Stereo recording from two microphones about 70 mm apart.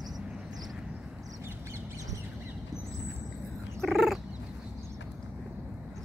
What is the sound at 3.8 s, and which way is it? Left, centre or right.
Cat, centre.